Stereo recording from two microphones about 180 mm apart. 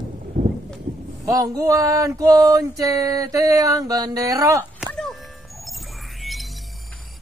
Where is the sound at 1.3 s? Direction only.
20° right (ahead or behind).